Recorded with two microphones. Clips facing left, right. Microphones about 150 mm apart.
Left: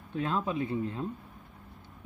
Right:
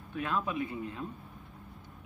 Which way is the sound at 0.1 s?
25° left (ahead or behind).